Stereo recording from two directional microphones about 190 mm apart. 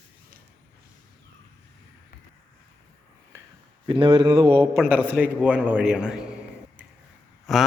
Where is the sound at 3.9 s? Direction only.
25° right (ahead or behind).